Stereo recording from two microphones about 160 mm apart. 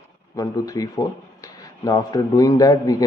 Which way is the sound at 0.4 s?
20° left (ahead or behind).